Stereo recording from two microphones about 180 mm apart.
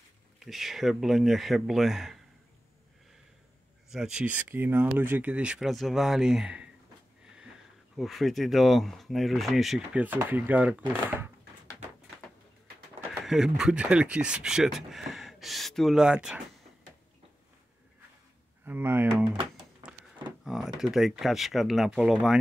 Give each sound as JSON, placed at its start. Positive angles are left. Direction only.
{"t": 0.4, "sound": "speech", "side_deg": 0}
{"t": 3.9, "sound": "speech", "side_deg": -5}
{"t": 7.9, "sound": "speech", "side_deg": 0}
{"t": 13.2, "sound": "speech", "side_deg": 0}
{"t": 18.7, "sound": "speech", "side_deg": -10}
{"t": 20.4, "sound": "door", "side_deg": 0}
{"t": 20.8, "sound": "speech", "side_deg": 0}